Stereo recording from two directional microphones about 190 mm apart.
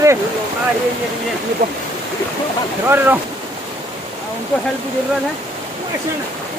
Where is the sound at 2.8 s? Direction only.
10° right (ahead or behind).